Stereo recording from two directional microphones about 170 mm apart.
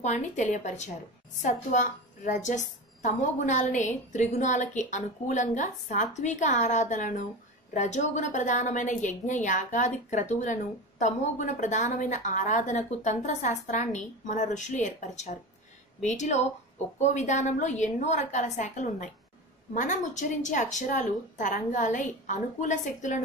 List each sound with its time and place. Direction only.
0.0 s a woman's voice: 45° left (ahead or behind)